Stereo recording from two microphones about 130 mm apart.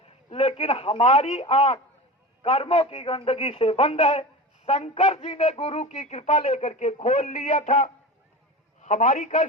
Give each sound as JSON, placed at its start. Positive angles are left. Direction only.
{"t": 0.3, "sound": "a man's voice", "side_deg": 50}